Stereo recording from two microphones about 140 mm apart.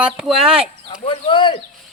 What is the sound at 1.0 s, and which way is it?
Speech, 35° left (ahead or behind).